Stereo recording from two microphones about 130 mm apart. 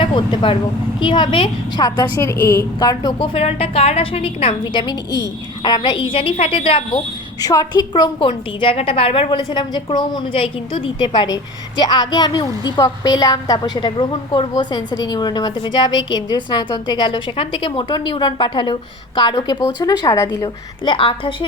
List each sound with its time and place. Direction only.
0.0 s a woman's voice: 35° left (ahead or behind)
3.2 s a woman's voice: 50° left (ahead or behind)
7.4 s a woman's voice: 30° left (ahead or behind)
8.3 s a woman's voice: 45° left (ahead or behind)
9.5 s a woman's voice: 35° left (ahead or behind)
20.8 s a woman's voice: 40° left (ahead or behind)